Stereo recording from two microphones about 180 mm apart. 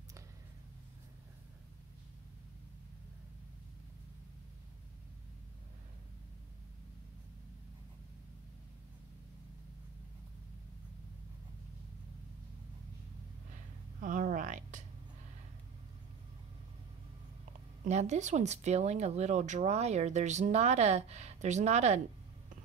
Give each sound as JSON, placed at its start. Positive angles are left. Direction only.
{"t": 14.0, "sound": "speech", "side_deg": -50}
{"t": 17.8, "sound": "speech", "side_deg": -40}